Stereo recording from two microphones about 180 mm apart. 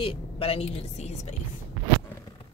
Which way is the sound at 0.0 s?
30° left (ahead or behind).